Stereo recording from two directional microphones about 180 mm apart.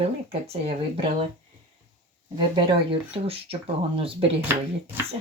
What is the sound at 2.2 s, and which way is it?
Speech, 30° right (ahead or behind).